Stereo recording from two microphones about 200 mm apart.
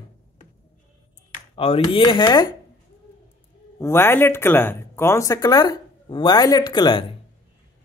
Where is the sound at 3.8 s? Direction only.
10° left (ahead or behind).